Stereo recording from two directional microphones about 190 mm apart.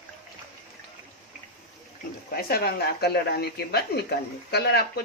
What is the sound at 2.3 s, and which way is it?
Speech, 55° left (ahead or behind).